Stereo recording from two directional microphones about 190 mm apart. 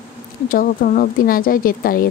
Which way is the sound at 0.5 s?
45° left (ahead or behind).